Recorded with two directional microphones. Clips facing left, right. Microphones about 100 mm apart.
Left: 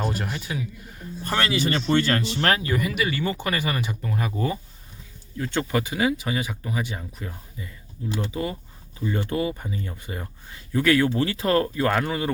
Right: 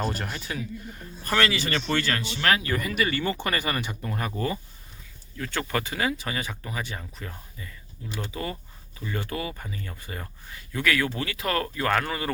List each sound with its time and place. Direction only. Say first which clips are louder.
0.0 s speech: left 2 dB; 5° left (ahead or behind)
1.2 s speech: left 1 dB; 25° left (ahead or behind)
2.1 s speech: left 2 dB; 40° left (ahead or behind)
2.6 s speech: left 2 dB; 10° left (ahead or behind)
5.4 s speech: left 4 dB; 20° left (ahead or behind)